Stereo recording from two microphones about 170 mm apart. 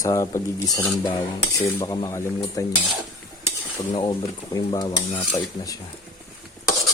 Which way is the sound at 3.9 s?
25° left (ahead or behind).